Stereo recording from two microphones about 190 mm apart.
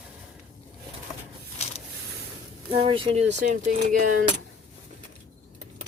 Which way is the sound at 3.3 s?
40° right (ahead or behind).